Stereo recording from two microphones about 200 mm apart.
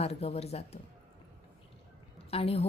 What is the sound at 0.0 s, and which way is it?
Speech, 30° left (ahead or behind).